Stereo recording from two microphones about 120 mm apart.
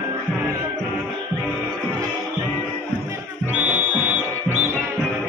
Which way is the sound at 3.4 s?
10° right (ahead or behind).